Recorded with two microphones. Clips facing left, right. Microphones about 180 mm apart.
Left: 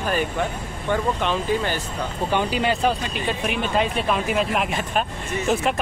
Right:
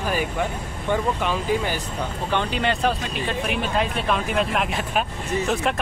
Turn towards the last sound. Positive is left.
turn(degrees=0)  # may be behind; listen again after turning